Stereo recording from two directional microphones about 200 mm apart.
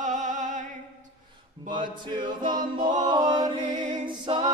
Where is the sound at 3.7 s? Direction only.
35° right (ahead or behind).